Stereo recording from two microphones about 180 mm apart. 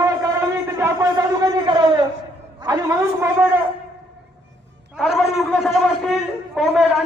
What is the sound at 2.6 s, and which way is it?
Speech, 20° right (ahead or behind).